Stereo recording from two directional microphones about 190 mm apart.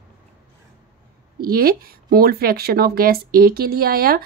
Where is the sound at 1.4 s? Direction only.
50° right (ahead or behind).